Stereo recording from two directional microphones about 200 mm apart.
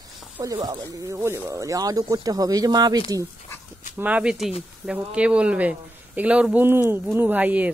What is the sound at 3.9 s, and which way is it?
Speech, 10° right (ahead or behind).